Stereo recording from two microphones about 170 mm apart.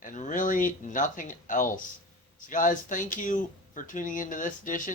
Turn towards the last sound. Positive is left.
turn(degrees=50)  # may be behind; listen again after turning